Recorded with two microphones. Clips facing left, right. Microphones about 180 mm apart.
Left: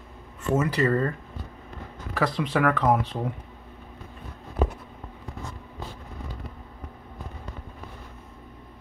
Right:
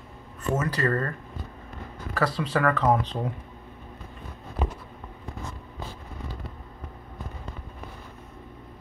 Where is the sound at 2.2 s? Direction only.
15° left (ahead or behind).